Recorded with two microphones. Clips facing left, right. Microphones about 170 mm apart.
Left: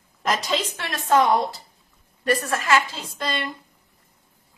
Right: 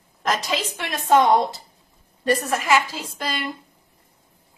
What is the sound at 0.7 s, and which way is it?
A woman's voice, 20° right (ahead or behind).